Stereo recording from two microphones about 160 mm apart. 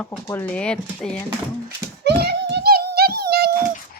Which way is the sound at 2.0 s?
90° right.